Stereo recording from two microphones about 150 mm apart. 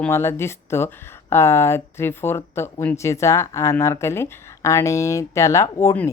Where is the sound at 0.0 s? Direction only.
15° left (ahead or behind).